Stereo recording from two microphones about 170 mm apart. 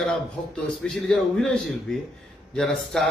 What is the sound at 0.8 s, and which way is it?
Speech, 5° left (ahead or behind).